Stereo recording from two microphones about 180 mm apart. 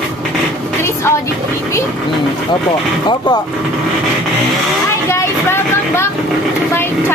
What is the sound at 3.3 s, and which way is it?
Speech, 25° left (ahead or behind).